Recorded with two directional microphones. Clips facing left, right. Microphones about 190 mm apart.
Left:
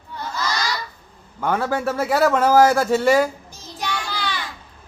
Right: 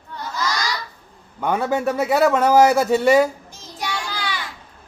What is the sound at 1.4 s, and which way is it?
Speech, 20° right (ahead or behind).